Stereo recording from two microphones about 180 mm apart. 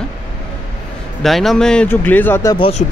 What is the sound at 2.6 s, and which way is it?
Speech, 35° left (ahead or behind).